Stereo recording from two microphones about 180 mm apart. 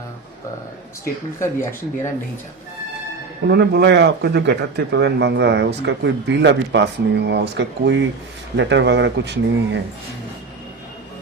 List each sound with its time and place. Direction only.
1.4 s speech: 15° left (ahead or behind)
3.4 s speech: 65° right (ahead or behind)